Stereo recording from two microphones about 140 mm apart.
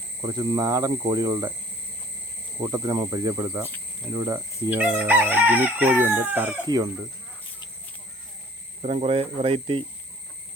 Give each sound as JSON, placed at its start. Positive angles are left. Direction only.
{"t": 0.2, "sound": "speech", "side_deg": -25}
{"t": 2.6, "sound": "speech", "side_deg": -25}
{"t": 4.1, "sound": "crowing", "side_deg": -25}
{"t": 6.7, "sound": "speech", "side_deg": -25}
{"t": 8.8, "sound": "speech", "side_deg": -45}